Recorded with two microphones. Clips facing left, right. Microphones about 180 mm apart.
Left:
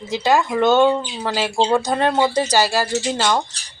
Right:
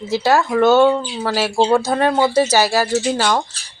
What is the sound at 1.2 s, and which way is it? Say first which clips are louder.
Speech: right 3 dB; 10° right (ahead or behind).